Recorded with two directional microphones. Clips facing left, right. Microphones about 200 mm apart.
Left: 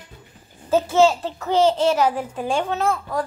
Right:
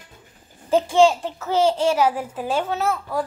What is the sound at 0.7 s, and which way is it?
A child's voice, 15° right (ahead or behind).